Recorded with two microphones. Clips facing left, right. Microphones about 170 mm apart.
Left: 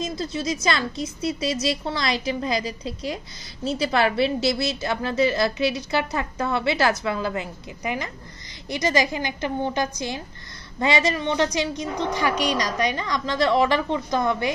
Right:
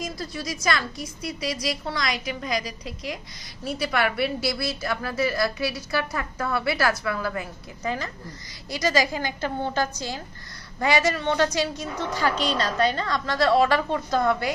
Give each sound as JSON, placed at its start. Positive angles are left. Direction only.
{"t": 0.0, "sound": "a woman's voice", "side_deg": 25}